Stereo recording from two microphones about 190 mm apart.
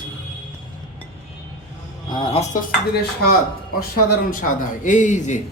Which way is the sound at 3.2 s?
50° left (ahead or behind).